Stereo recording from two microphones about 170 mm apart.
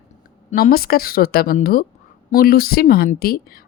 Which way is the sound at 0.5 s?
60° left (ahead or behind).